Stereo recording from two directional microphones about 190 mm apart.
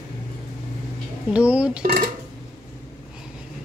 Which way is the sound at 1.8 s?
45° right (ahead or behind).